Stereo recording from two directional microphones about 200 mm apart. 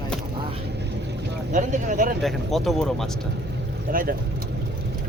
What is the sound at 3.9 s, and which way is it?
Speech, 45° right (ahead or behind).